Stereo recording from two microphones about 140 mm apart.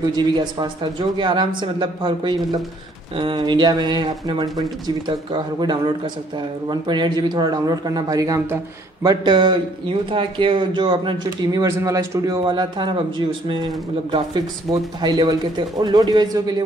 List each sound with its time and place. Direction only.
0.0 s a man's voice: 30° right (ahead or behind)
11.6 s a man's voice: 20° right (ahead or behind)
14.1 s speech: 30° right (ahead or behind)